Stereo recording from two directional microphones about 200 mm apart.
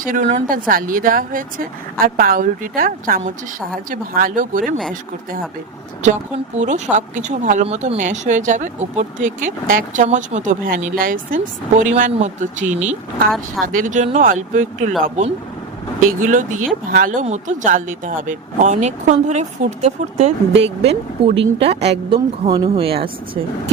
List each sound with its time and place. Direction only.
0.0 s speech: 40° right (ahead or behind)
6.0 s speech: 35° right (ahead or behind)
22.4 s speech: 20° right (ahead or behind)
22.7 s speech: 30° right (ahead or behind)